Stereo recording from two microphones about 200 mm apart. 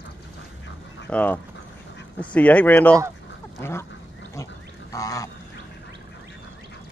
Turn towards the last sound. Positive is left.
turn(degrees=15)  # may be behind; listen again after turning